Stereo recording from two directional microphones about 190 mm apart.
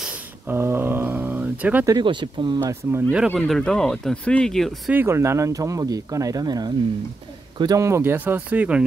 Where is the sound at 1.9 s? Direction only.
25° right (ahead or behind).